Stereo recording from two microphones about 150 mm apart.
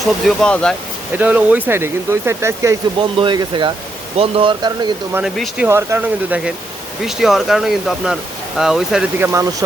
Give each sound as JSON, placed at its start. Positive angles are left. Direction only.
{"t": 0.0, "sound": "speech", "side_deg": 5}
{"t": 1.1, "sound": "speech", "side_deg": -10}
{"t": 3.0, "sound": "speech", "side_deg": -30}
{"t": 5.2, "sound": "speech", "side_deg": -5}
{"t": 5.6, "sound": "speech", "side_deg": -20}
{"t": 9.2, "sound": "speech", "side_deg": -20}